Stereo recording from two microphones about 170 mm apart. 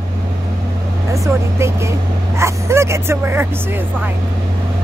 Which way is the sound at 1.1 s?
15° right (ahead or behind).